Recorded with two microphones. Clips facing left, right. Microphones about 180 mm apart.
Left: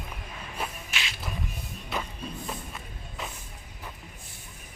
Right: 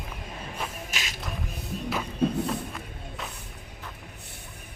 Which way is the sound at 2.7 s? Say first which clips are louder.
Right 3 dB; centre (ahead or behind).